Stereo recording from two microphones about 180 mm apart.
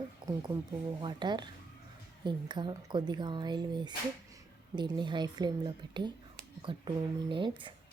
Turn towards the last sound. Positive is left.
turn(degrees=-25)  # may be behind; listen again after turning